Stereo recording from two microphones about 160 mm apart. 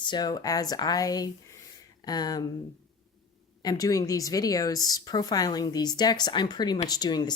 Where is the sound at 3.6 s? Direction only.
20° left (ahead or behind).